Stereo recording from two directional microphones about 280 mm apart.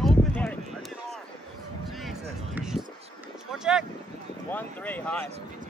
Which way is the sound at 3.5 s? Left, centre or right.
Centre.